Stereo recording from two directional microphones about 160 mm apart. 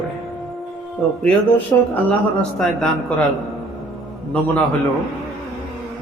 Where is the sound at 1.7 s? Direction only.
20° left (ahead or behind).